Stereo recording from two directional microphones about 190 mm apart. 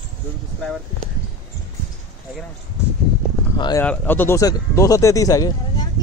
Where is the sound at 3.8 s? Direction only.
10° left (ahead or behind).